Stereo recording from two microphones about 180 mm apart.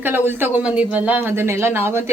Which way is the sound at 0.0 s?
10° right (ahead or behind).